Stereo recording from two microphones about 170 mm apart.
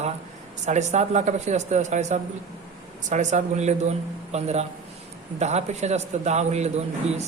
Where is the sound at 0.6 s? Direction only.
45° right (ahead or behind).